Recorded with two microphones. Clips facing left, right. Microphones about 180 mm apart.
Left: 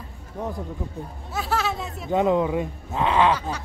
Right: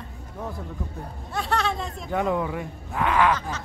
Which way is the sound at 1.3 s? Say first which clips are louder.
Even; 5° left (ahead or behind).